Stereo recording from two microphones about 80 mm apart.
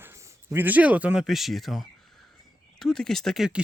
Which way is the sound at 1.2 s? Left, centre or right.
Centre.